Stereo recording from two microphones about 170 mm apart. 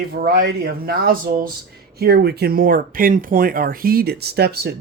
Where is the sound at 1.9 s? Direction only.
70° right (ahead or behind).